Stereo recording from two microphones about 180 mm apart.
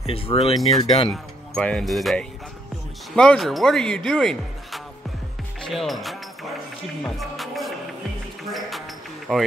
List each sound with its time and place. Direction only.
0.0 s speech: 30° left (ahead or behind)
1.1 s speech: 5° left (ahead or behind)
5.6 s music: centre (ahead or behind)
8.5 s a sound: centre (ahead or behind)
9.3 s speech: centre (ahead or behind)